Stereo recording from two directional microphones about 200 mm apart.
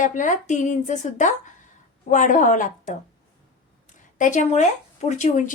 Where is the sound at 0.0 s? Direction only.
40° left (ahead or behind).